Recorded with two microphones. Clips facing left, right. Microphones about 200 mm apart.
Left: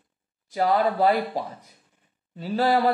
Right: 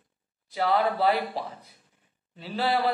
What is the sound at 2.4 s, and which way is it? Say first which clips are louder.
Speech: left 5 dB; 45° left (ahead or behind).